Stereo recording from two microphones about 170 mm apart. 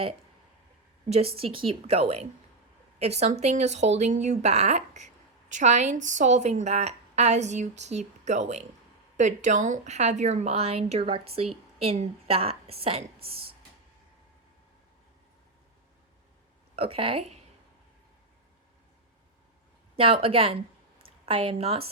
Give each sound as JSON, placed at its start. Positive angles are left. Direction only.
{"t": 1.1, "sound": "a woman's voice", "side_deg": -35}
{"t": 16.7, "sound": "a woman's voice", "side_deg": -35}
{"t": 20.0, "sound": "a woman's voice", "side_deg": -35}